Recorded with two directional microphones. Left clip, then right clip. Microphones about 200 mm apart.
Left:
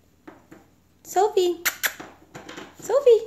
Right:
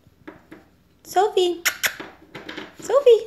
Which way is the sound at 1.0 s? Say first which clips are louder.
Right 2 dB; 5° left (ahead or behind).